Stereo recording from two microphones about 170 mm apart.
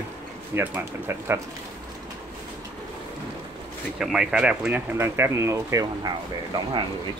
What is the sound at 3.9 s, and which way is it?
Speech, centre (ahead or behind).